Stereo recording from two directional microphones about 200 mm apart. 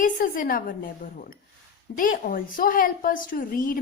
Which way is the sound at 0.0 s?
45° left (ahead or behind).